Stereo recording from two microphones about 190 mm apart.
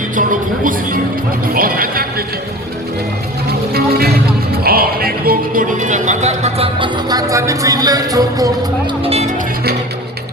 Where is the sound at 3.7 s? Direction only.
55° right (ahead or behind).